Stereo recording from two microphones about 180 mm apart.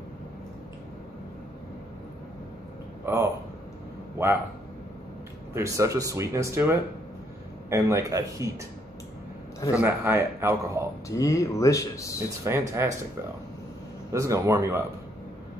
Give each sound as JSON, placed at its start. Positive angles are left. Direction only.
{"t": 3.1, "sound": "speech", "side_deg": -15}
{"t": 5.5, "sound": "speech", "side_deg": -15}
{"t": 9.7, "sound": "speech", "side_deg": -10}
{"t": 11.1, "sound": "speech", "side_deg": 20}
{"t": 12.4, "sound": "speech", "side_deg": -15}
{"t": 14.1, "sound": "speech", "side_deg": -15}